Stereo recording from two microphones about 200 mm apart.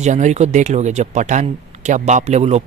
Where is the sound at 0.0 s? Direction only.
35° right (ahead or behind).